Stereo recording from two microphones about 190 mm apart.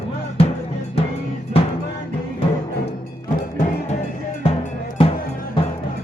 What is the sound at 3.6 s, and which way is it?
Music, 40° left (ahead or behind).